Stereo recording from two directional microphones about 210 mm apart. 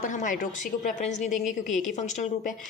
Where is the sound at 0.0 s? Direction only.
35° left (ahead or behind).